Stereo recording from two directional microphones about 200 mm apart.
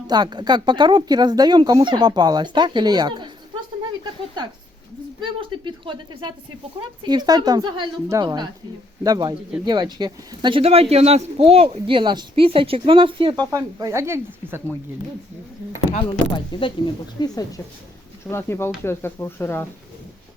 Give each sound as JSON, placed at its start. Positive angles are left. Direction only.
{"t": 0.1, "sound": "speech", "side_deg": -20}
{"t": 5.2, "sound": "speech", "side_deg": -25}
{"t": 16.0, "sound": "speech", "side_deg": 25}